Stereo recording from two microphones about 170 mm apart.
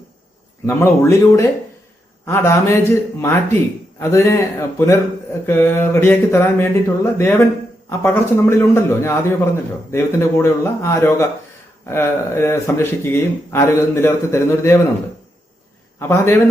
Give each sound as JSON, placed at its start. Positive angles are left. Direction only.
{"t": 0.6, "sound": "speech", "side_deg": 15}
{"t": 16.0, "sound": "speech", "side_deg": 15}